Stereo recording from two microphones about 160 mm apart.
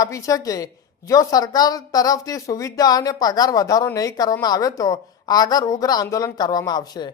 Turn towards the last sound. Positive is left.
turn(degrees=25)  # may be behind; listen again after turning